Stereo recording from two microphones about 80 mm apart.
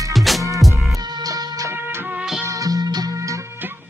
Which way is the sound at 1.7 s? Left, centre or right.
Right.